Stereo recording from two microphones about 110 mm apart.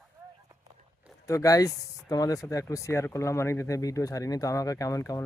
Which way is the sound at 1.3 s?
30° left (ahead or behind).